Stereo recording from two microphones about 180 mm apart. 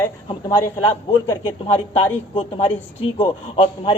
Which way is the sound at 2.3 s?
30° left (ahead or behind).